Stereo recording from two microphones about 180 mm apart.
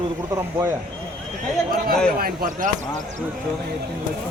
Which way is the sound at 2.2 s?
50° right (ahead or behind).